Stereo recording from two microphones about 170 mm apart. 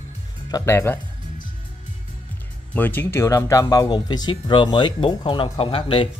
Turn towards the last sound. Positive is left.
turn(degrees=30)  # may be behind; listen again after turning